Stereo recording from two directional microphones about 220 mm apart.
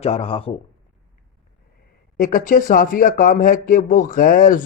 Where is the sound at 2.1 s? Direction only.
35° left (ahead or behind).